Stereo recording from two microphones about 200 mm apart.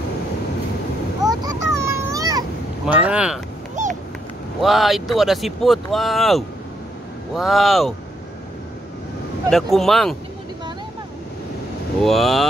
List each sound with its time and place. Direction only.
1.3 s a sound: 20° right (ahead or behind)
2.9 s speech: 5° right (ahead or behind)
3.8 s a sound: 40° right (ahead or behind)
4.6 s speech: centre (ahead or behind)
9.5 s speech: centre (ahead or behind)
12.0 s speech: centre (ahead or behind)